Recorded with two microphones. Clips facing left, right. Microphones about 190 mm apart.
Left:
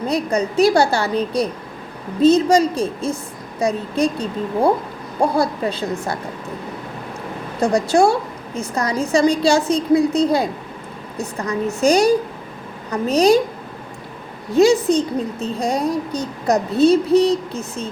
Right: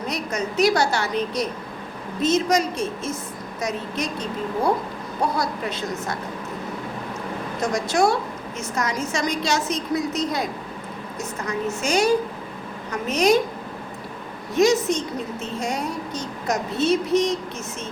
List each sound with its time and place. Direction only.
0.3 s a woman's voice: 35° left (ahead or behind)
7.6 s a woman's voice: 30° left (ahead or behind)
14.5 s a woman's voice: 30° left (ahead or behind)